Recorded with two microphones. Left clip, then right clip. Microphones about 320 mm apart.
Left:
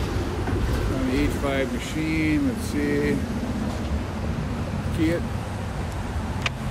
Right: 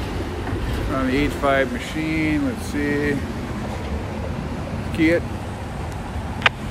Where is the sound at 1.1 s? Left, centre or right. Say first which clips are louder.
Right 7 dB; centre.